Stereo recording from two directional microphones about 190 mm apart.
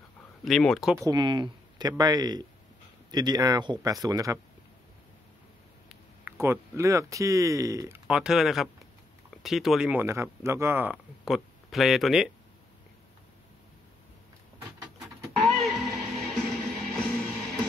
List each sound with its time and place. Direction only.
0.5 s speech: centre (ahead or behind)
0.9 s speech: 20° right (ahead or behind)
5.9 s speech: 10° right (ahead or behind)
8.1 s speech: 5° right (ahead or behind)
15.4 s music: centre (ahead or behind)